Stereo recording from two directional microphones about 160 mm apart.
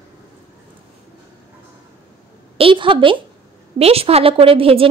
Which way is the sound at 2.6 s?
35° right (ahead or behind).